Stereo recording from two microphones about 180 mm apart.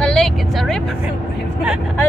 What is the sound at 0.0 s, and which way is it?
Vehicle, 5° left (ahead or behind).